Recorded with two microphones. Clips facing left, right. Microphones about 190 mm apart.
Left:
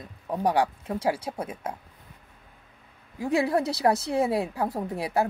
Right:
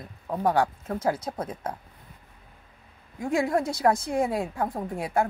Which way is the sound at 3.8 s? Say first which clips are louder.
Even; 30° left (ahead or behind).